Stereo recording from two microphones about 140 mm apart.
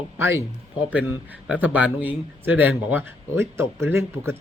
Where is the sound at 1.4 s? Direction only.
10° right (ahead or behind).